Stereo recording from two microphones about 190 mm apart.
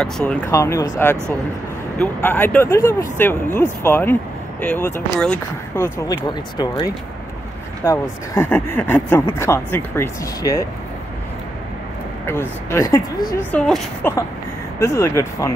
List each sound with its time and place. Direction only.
0.0 s speech: 5° left (ahead or behind)
0.5 s speech: 15° left (ahead or behind)
5.8 s speech: 20° left (ahead or behind)
12.3 s speech: 15° left (ahead or behind)
13.5 s speech: 5° left (ahead or behind)
14.8 s speech: 15° left (ahead or behind)